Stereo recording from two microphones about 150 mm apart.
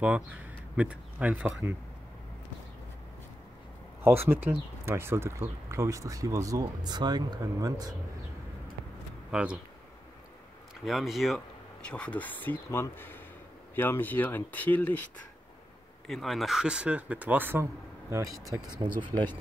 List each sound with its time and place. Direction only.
0.7 s speech: 10° right (ahead or behind)
4.0 s speech: 15° right (ahead or behind)
9.3 s speech: 5° right (ahead or behind)
10.9 s speech: centre (ahead or behind)
16.1 s speech: centre (ahead or behind)
18.8 s speech: 30° right (ahead or behind)